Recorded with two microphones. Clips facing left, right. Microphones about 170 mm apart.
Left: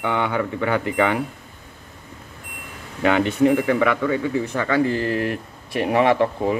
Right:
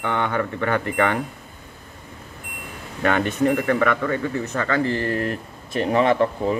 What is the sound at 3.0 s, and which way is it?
Speech, 15° left (ahead or behind).